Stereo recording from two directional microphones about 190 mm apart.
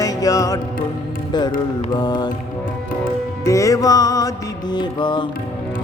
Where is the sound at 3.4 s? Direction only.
15° left (ahead or behind).